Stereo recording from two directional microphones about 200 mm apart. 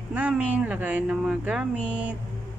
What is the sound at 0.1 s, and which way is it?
Speech, 5° right (ahead or behind).